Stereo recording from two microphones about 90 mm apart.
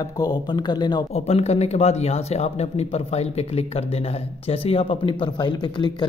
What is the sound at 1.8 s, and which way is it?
Speech, 90° left.